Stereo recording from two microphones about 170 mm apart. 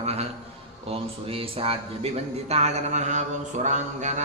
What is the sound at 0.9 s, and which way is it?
Mantra, 35° right (ahead or behind).